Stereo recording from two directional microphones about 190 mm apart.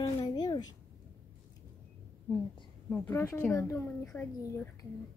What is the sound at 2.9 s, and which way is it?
A woman's voice, 10° left (ahead or behind).